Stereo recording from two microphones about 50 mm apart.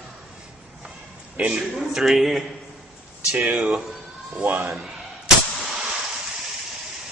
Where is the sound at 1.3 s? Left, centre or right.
Right.